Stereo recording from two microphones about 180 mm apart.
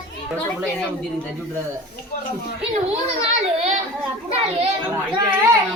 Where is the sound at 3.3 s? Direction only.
35° right (ahead or behind).